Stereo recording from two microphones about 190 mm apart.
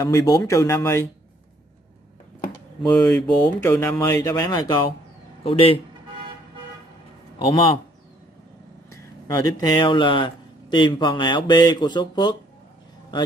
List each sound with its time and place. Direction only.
0.0 s speech: 15° left (ahead or behind)
2.9 s a man's voice: 10° left (ahead or behind); by 5.8 s 30° left (ahead or behind)
7.3 s a man's voice: 25° left (ahead or behind)
8.9 s a man's voice: 20° left (ahead or behind)